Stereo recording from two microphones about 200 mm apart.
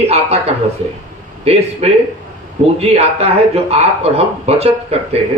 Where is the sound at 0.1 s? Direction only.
30° right (ahead or behind).